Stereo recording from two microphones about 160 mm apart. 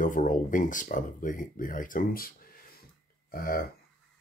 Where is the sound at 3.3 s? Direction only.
65° left (ahead or behind).